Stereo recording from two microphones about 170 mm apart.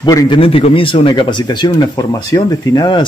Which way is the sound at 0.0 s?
25° left (ahead or behind).